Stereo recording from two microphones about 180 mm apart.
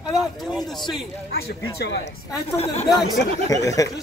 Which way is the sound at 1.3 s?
65° left (ahead or behind).